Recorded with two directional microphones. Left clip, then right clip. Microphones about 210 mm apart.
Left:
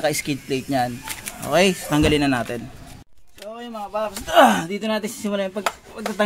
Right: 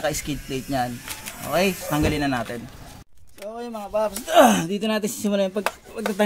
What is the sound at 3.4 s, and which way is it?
Speech, 45° right (ahead or behind).